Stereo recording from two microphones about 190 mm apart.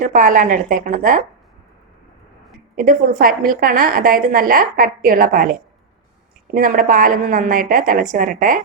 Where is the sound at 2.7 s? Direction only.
45° right (ahead or behind).